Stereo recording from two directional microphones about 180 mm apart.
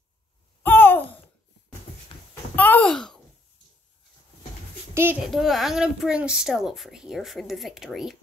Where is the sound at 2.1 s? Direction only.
30° left (ahead or behind).